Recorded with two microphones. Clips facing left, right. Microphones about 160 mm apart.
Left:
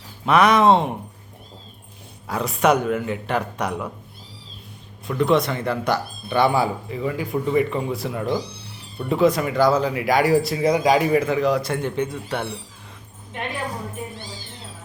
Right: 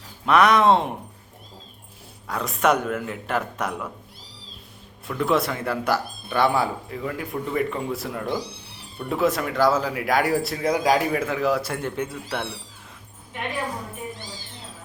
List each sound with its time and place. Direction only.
0.3 s speech: centre (ahead or behind)
2.2 s speech: centre (ahead or behind)
5.0 s speech: centre (ahead or behind)